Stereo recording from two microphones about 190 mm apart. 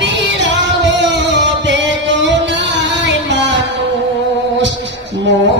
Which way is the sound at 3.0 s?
70° right (ahead or behind).